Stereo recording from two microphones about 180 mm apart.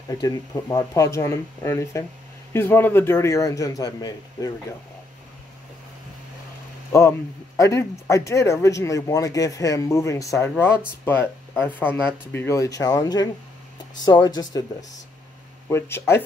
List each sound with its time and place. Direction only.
0.1 s speech: 20° left (ahead or behind)
6.9 s speech: 15° left (ahead or behind)
15.7 s speech: 15° left (ahead or behind)